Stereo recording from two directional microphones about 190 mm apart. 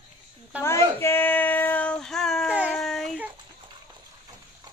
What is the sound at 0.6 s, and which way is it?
Child singing, 15° left (ahead or behind).